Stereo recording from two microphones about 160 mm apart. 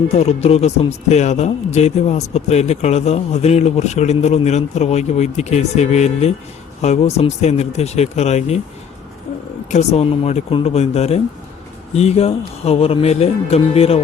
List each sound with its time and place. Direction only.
0.2 s speech: 40° left (ahead or behind)
9.6 s speech: 45° left (ahead or behind)